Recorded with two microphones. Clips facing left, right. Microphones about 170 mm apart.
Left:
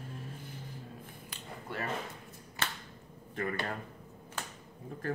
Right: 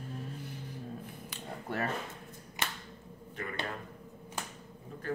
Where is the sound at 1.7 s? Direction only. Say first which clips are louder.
Right 4 dB; 45° right (ahead or behind).